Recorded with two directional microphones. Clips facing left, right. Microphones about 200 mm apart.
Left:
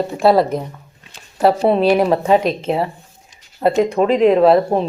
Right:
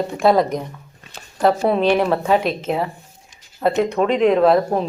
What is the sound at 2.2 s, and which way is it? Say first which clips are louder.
Speech: left 3 dB; 35° left (ahead or behind).